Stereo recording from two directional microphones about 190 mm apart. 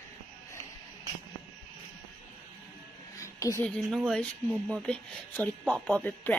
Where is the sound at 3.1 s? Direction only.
15° left (ahead or behind).